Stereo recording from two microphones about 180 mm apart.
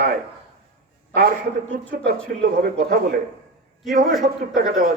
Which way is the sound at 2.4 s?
60° right (ahead or behind).